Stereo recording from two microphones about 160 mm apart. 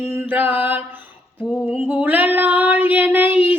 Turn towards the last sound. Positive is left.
turn(degrees=-10)  # may be behind; listen again after turning